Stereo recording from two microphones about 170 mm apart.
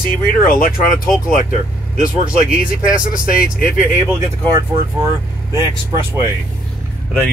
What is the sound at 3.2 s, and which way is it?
Speech, 55° left (ahead or behind).